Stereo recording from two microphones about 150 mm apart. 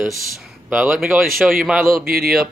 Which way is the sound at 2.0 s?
80° right.